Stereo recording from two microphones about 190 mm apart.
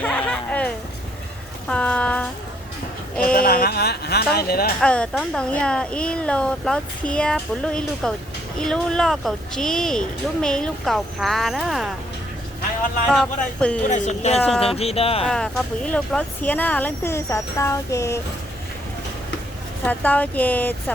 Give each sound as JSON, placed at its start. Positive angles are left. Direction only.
{"t": 0.0, "sound": "a sound", "side_deg": 5}
{"t": 3.3, "sound": "speech", "side_deg": 50}
{"t": 4.8, "sound": "speech", "side_deg": 5}
{"t": 13.1, "sound": "speech", "side_deg": 5}
{"t": 13.8, "sound": "speech", "side_deg": 40}
{"t": 15.3, "sound": "speech", "side_deg": 5}
{"t": 19.8, "sound": "speech", "side_deg": 10}